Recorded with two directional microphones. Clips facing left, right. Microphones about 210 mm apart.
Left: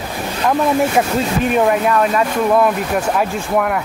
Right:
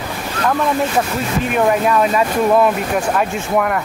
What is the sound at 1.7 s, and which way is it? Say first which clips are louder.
Speech: even; centre (ahead or behind).